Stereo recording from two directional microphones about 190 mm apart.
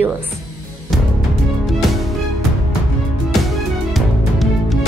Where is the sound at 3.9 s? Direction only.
Centre (ahead or behind).